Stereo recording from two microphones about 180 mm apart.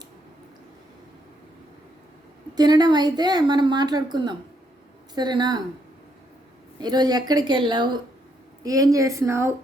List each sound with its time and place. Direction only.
2.6 s a woman's voice: 20° right (ahead or behind)
6.7 s a woman's voice: 20° right (ahead or behind)